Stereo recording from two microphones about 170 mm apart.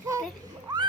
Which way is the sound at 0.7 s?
25° right (ahead or behind).